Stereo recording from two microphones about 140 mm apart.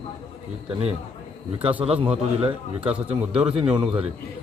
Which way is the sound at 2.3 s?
40° right (ahead or behind).